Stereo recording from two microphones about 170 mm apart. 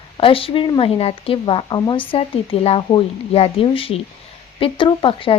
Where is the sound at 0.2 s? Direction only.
30° left (ahead or behind).